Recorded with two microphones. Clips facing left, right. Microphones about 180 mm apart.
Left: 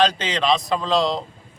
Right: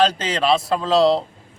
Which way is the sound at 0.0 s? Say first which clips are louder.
Right 1 dB; 5° right (ahead or behind).